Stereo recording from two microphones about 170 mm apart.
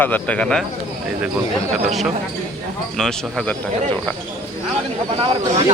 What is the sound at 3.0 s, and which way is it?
Speech, 5° left (ahead or behind).